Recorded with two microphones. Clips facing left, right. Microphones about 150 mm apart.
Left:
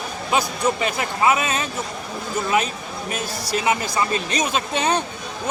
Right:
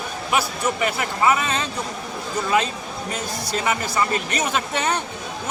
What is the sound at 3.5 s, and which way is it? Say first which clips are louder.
Speech: left 3 dB; 15° left (ahead or behind).